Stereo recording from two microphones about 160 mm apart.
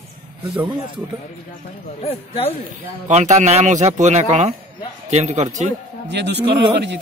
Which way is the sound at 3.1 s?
45° right (ahead or behind).